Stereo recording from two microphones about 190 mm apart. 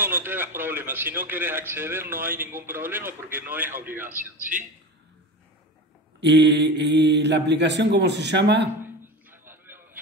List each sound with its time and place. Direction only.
0.0 s a man's voice: 10° right (ahead or behind)
6.2 s speech: 65° right (ahead or behind)
8.8 s music: 10° right (ahead or behind)